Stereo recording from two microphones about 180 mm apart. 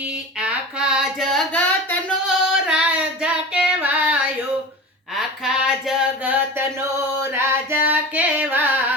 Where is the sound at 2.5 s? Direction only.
5° right (ahead or behind).